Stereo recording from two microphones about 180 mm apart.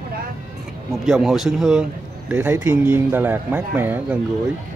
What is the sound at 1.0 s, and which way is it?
A man's voice, centre (ahead or behind).